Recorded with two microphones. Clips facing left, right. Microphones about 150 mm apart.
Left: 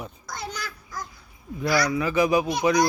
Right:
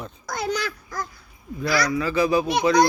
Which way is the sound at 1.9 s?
15° left (ahead or behind).